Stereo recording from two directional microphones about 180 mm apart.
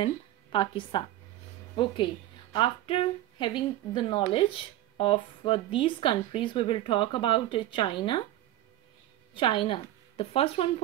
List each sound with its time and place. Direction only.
0.0 s a woman's voice: 30° left (ahead or behind)
2.5 s speech: 30° left (ahead or behind)
9.3 s a woman's voice: 30° left (ahead or behind)